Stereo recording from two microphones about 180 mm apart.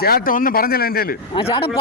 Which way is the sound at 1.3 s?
30° left (ahead or behind).